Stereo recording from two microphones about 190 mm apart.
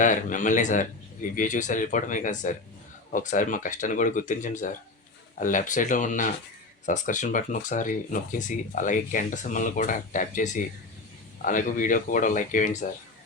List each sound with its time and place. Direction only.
0.0 s speech: 40° left (ahead or behind)